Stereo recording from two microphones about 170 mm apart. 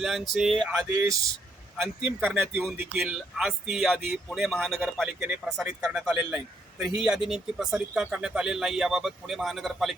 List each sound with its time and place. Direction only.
0.0 s speech: centre (ahead or behind)
0.9 s speech: 20° right (ahead or behind); by 9.9 s centre (ahead or behind)